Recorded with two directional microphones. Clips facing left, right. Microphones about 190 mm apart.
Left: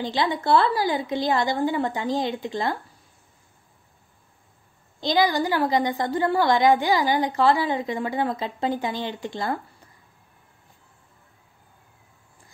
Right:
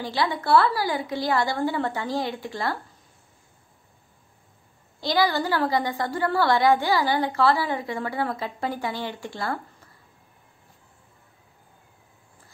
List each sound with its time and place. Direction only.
0.0 s a woman's voice: 20° left (ahead or behind)
5.0 s a woman's voice: 20° left (ahead or behind)